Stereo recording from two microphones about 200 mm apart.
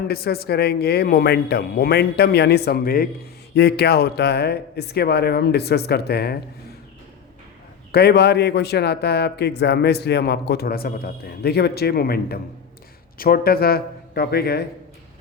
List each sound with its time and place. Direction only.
0.1 s a man's voice: 50° left (ahead or behind)
7.9 s a man's voice: 55° left (ahead or behind)